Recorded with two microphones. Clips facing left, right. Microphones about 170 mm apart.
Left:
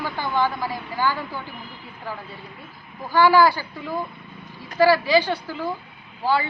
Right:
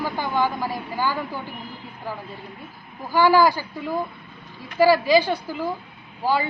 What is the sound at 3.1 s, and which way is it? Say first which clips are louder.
Speech: left 1 dB; 15° right (ahead or behind).